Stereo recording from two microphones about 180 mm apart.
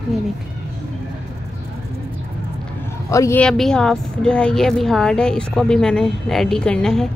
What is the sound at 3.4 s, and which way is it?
Speech, 5° left (ahead or behind).